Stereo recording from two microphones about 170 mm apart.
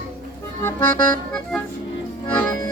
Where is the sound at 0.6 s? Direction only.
15° left (ahead or behind).